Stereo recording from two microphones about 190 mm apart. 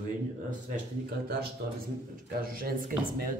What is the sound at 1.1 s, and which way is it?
Speech, 55° right (ahead or behind).